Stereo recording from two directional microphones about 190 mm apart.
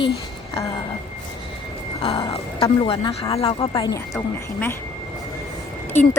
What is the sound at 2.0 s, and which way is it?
Speech, 30° left (ahead or behind).